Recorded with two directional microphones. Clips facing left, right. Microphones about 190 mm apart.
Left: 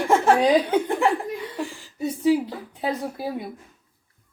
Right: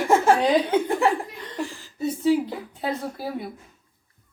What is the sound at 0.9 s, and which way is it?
Chuckle, centre (ahead or behind).